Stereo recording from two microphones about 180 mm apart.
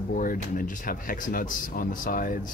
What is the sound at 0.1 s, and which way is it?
Speech, 50° left (ahead or behind).